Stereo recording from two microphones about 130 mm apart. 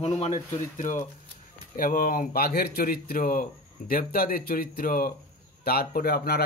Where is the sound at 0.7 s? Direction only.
80° left.